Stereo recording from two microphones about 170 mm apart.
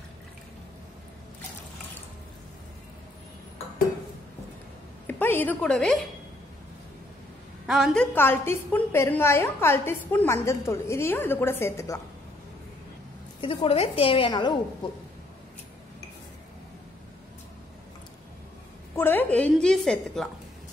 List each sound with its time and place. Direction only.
5.0 s a woman's voice: 10° left (ahead or behind)
7.6 s a woman's voice: centre (ahead or behind); by 12.0 s 15° left (ahead or behind)
13.4 s a woman's voice: 30° left (ahead or behind)
18.9 s a woman's voice: 10° left (ahead or behind)